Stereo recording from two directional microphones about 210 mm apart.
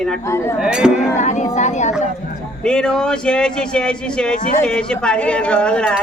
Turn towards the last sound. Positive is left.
turn(degrees=5)  # may be behind; listen again after turning